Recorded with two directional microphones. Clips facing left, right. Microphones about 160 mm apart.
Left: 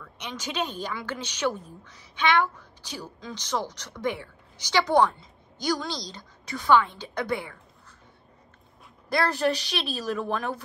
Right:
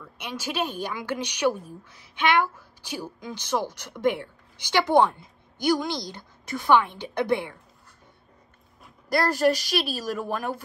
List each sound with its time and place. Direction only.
0.0 s a woman's voice: 10° right (ahead or behind)
9.1 s a woman's voice: 5° right (ahead or behind)